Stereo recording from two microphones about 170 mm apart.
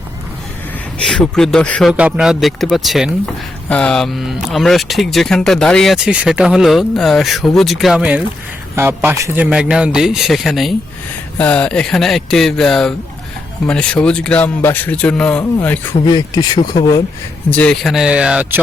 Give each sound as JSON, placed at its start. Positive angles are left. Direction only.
{"t": 0.9, "sound": "speech", "side_deg": 5}
{"t": 1.9, "sound": "a man's voice", "side_deg": -5}
{"t": 16.0, "sound": "speech", "side_deg": 25}
{"t": 17.5, "sound": "speech", "side_deg": 5}